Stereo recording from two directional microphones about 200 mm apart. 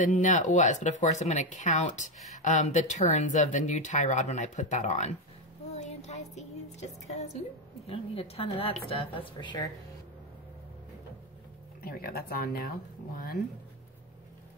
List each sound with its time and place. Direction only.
0.0 s a woman's voice: 40° left (ahead or behind); by 9.7 s 25° left (ahead or behind)
11.8 s speech: 50° left (ahead or behind)